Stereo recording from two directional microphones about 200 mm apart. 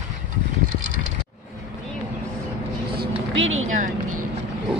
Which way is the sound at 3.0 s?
70° right (ahead or behind).